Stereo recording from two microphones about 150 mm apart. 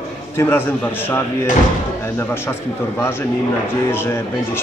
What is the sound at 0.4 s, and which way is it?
A man's voice, 15° left (ahead or behind).